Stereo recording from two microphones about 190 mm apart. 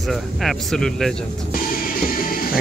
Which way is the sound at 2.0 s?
50° left (ahead or behind).